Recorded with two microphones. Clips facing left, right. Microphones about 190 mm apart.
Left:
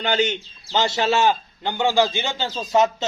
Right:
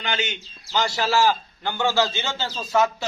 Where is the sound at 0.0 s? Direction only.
35° left (ahead or behind).